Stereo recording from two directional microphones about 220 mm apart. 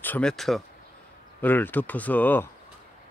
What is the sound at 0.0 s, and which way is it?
Speech, 5° left (ahead or behind).